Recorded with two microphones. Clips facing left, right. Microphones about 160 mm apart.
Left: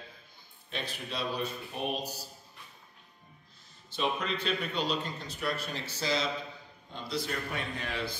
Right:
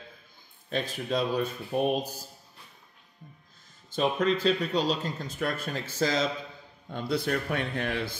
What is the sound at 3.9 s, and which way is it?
A man's voice, 45° right (ahead or behind).